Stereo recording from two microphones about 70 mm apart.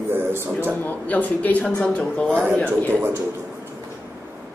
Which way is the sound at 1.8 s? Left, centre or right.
Centre.